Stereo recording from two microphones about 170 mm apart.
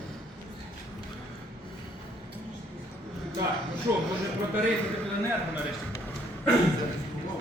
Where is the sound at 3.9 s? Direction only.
15° right (ahead or behind).